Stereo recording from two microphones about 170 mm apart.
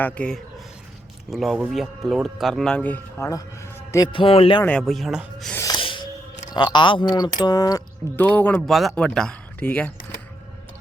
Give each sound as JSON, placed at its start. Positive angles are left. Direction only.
{"t": 0.0, "sound": "speech", "side_deg": 5}
{"t": 4.1, "sound": "a man's voice", "side_deg": 30}
{"t": 4.6, "sound": "speech", "side_deg": 5}
{"t": 5.5, "sound": "music", "side_deg": 25}
{"t": 6.5, "sound": "speech", "side_deg": 25}
{"t": 8.1, "sound": "speech", "side_deg": 10}